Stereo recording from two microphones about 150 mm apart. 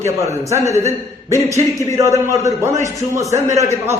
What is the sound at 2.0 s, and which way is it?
A man's voice, 20° right (ahead or behind).